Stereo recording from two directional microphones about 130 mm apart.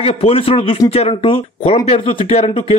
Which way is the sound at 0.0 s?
50° left (ahead or behind).